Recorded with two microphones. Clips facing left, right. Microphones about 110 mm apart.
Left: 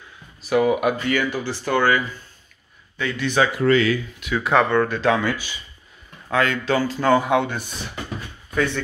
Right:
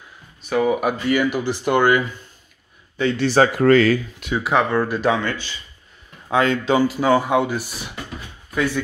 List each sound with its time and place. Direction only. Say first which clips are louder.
0.4 s speech: left 1 dB; 5° left (ahead or behind); by 2.0 s 20° right (ahead or behind)
3.0 s speech: right 4 dB; 30° right (ahead or behind)
3.5 s speech: right 4 dB; 45° right (ahead or behind)
4.4 s speech: left 1 dB; centre (ahead or behind)
5.1 s speech: left 1 dB; 10° left (ahead or behind)
6.3 s speech: right 3 dB; 20° right (ahead or behind); by 8.8 s 5° right (ahead or behind)